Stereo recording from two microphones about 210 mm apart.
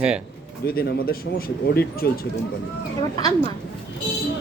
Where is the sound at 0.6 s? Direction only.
45° left (ahead or behind).